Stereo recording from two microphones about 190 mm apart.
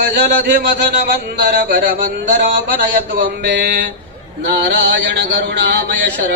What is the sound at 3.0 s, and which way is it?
Speech, 65° right (ahead or behind).